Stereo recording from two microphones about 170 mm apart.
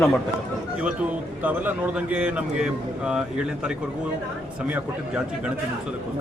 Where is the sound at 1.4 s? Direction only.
10° right (ahead or behind).